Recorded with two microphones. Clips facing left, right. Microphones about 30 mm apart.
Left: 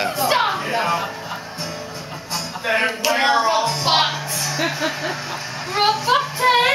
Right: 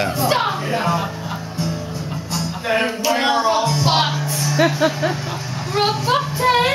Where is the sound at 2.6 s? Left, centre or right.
Centre.